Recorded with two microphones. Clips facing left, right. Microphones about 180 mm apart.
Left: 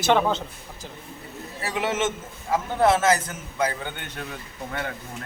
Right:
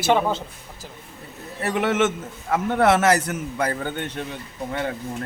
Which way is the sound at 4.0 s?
30° right (ahead or behind).